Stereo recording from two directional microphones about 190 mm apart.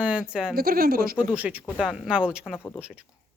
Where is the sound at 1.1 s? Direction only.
10° right (ahead or behind).